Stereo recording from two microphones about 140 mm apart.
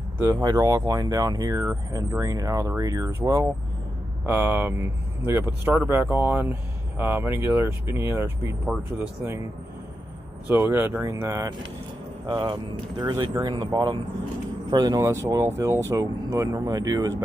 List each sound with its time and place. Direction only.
0.2 s speech: 25° right (ahead or behind)
10.5 s speech: 15° right (ahead or behind)